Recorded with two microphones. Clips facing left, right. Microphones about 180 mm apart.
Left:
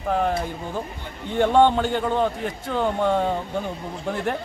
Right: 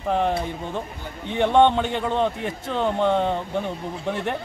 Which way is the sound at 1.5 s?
5° left (ahead or behind).